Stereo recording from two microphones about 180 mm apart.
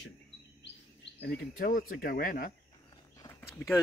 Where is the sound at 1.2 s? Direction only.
60° left (ahead or behind).